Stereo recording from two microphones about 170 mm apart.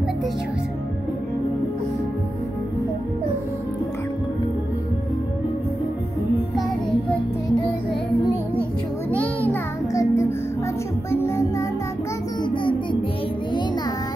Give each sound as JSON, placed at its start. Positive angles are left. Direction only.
{"t": 9.2, "sound": "music", "side_deg": 10}